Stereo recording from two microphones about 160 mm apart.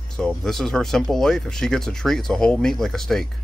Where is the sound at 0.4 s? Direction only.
Centre (ahead or behind).